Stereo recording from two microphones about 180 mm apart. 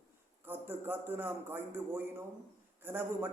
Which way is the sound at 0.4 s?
10° right (ahead or behind).